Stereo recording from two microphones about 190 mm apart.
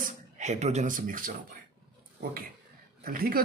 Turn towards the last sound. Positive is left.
turn(degrees=-50)  # may be behind; listen again after turning